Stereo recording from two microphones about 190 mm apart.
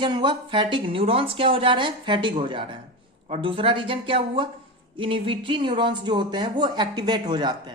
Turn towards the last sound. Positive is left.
turn(degrees=-25)  # may be behind; listen again after turning